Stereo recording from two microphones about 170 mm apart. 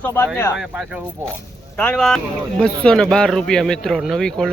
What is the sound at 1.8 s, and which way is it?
Speech, 5° left (ahead or behind).